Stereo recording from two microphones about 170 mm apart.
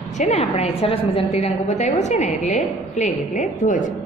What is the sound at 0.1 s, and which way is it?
A woman's voice, 40° left (ahead or behind).